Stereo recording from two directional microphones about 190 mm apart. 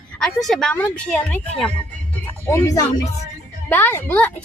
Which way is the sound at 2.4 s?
15° left (ahead or behind).